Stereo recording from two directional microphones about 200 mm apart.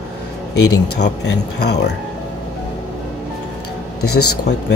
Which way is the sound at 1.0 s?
55° left (ahead or behind).